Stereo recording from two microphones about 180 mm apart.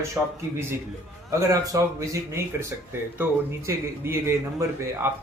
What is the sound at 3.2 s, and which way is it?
A man's voice, 15° right (ahead or behind).